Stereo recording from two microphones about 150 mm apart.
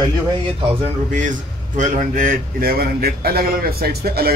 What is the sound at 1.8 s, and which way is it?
A man's voice, 65° right (ahead or behind).